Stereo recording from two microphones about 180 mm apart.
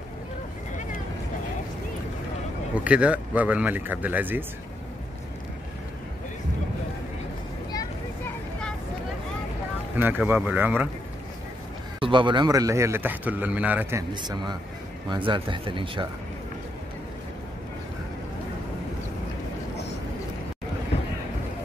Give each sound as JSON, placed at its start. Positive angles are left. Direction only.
{"t": 2.7, "sound": "a man's voice", "side_deg": -5}
{"t": 9.9, "sound": "a man's voice", "side_deg": -10}
{"t": 12.0, "sound": "a man's voice", "side_deg": -25}
{"t": 14.1, "sound": "speech", "side_deg": -25}